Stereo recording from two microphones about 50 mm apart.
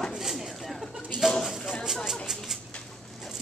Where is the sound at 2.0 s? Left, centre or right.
Centre.